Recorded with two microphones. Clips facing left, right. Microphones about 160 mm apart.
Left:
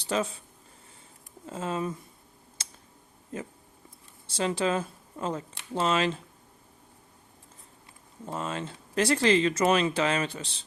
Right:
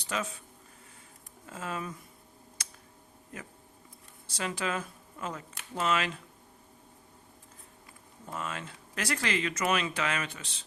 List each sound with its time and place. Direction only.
0.0 s speech: 30° left (ahead or behind)
1.5 s speech: 25° left (ahead or behind)
2.6 s a sound: 25° left (ahead or behind)
3.3 s speech: 25° left (ahead or behind)
8.3 s speech: 30° left (ahead or behind)